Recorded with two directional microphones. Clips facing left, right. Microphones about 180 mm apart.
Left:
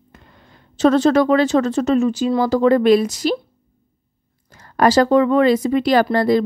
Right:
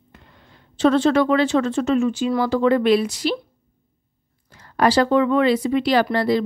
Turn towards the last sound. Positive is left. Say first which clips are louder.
# left 3 dB
turn(degrees=45)  # may be behind; listen again after turning